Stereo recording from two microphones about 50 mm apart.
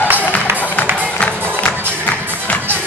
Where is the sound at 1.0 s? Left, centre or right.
Left.